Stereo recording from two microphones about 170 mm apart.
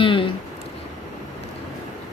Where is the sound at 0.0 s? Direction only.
30° left (ahead or behind).